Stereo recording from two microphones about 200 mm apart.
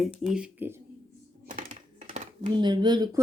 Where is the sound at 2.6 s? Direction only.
20° right (ahead or behind).